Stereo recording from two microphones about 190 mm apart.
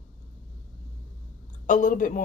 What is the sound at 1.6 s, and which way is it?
Speech, 40° left (ahead or behind).